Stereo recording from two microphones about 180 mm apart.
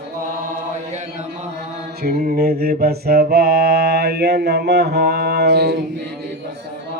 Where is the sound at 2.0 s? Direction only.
50° right (ahead or behind).